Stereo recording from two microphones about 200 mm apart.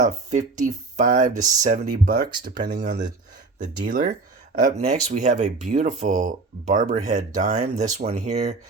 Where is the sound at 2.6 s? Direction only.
55° right (ahead or behind).